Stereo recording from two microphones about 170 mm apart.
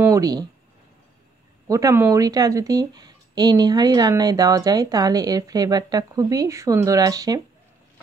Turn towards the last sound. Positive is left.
turn(degrees=-20)  # may be behind; listen again after turning